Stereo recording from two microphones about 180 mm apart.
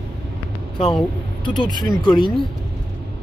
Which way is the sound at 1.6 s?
25° left (ahead or behind).